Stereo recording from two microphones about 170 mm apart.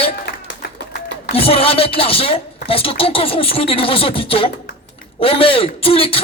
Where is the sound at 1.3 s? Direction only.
35° left (ahead or behind).